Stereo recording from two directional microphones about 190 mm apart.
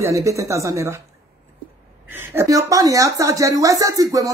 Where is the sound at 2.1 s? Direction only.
10° right (ahead or behind).